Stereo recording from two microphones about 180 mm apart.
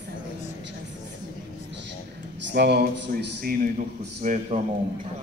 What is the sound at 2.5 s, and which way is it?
Speech, 65° right (ahead or behind).